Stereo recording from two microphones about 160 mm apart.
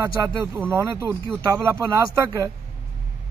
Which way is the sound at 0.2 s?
20° right (ahead or behind).